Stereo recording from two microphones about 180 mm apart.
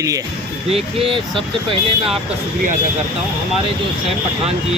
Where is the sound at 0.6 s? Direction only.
30° right (ahead or behind).